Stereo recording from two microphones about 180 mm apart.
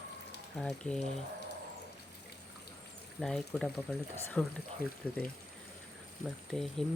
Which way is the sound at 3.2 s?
Centre (ahead or behind).